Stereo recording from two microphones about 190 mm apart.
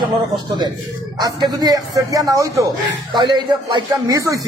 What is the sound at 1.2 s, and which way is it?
A man's voice, 20° right (ahead or behind).